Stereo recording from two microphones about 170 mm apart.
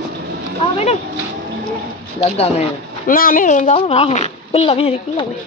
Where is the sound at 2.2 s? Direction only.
40° left (ahead or behind).